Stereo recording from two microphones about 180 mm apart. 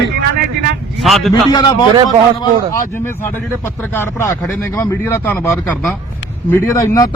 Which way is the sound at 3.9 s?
15° left (ahead or behind).